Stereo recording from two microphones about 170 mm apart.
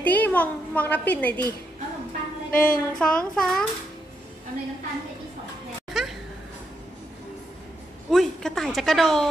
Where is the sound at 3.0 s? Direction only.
5° left (ahead or behind).